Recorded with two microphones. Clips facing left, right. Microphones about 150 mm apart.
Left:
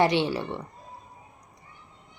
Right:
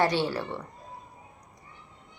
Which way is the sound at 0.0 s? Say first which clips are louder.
Left 3 dB; 20° left (ahead or behind).